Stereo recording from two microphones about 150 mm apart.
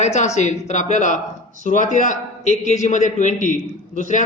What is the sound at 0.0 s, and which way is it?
A man's voice, 50° left (ahead or behind).